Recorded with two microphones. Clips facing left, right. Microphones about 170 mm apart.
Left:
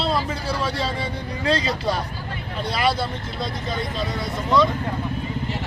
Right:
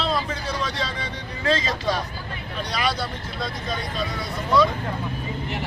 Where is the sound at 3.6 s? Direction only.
25° left (ahead or behind).